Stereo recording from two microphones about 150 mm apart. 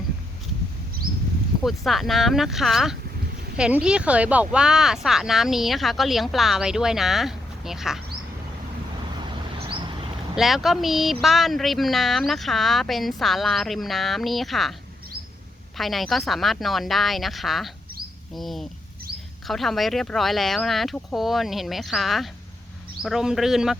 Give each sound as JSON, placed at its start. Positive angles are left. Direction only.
{"t": 1.6, "sound": "speech", "side_deg": 0}
{"t": 9.6, "sound": "a sound", "side_deg": -35}
{"t": 10.3, "sound": "speech", "side_deg": 0}
{"t": 15.8, "sound": "speech", "side_deg": 0}